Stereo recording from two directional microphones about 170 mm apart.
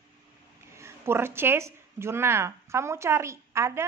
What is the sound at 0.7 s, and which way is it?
A woman's voice, 15° right (ahead or behind).